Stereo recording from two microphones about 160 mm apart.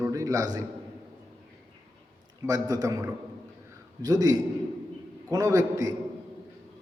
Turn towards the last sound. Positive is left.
turn(degrees=-20)  # may be behind; listen again after turning